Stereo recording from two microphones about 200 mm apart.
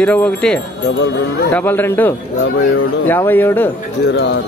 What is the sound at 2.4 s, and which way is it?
Speech, 90° left.